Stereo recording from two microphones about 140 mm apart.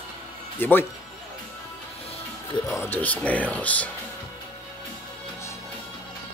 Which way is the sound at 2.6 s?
15° left (ahead or behind).